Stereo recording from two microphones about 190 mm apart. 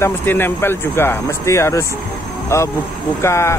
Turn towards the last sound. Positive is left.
turn(degrees=15)  # may be behind; listen again after turning